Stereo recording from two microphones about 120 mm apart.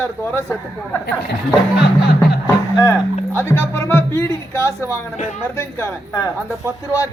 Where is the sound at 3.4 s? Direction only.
20° left (ahead or behind).